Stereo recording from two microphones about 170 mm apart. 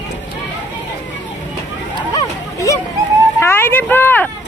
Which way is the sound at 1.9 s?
20° left (ahead or behind).